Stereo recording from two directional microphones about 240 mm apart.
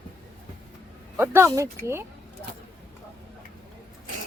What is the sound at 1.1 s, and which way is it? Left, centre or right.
Speech, centre.